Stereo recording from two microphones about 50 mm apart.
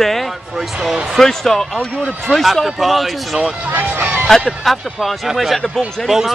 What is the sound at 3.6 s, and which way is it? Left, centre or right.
Music, right.